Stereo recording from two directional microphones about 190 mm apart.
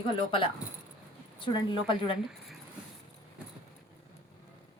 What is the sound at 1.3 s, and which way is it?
Speech, 25° left (ahead or behind).